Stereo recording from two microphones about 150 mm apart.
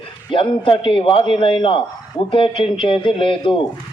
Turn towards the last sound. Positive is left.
turn(degrees=35)  # may be behind; listen again after turning